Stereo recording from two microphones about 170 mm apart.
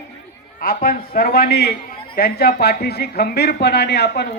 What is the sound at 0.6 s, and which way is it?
A man's voice, 60° left (ahead or behind).